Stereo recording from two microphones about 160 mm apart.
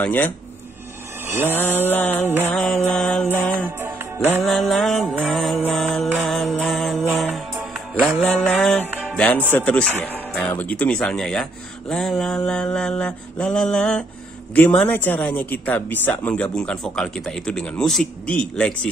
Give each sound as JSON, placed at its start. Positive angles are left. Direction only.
{"t": 0.0, "sound": "speech", "side_deg": 10}
{"t": 1.5, "sound": "speech", "side_deg": 10}
{"t": 2.5, "sound": "mantra", "side_deg": 5}
{"t": 3.5, "sound": "music", "side_deg": -15}
{"t": 4.4, "sound": "mantra", "side_deg": 0}
{"t": 5.1, "sound": "music", "side_deg": 0}
{"t": 8.0, "sound": "mantra", "side_deg": 0}
{"t": 9.1, "sound": "speech", "side_deg": 10}
{"t": 11.9, "sound": "mantra", "side_deg": 5}
{"t": 14.5, "sound": "speech", "side_deg": 10}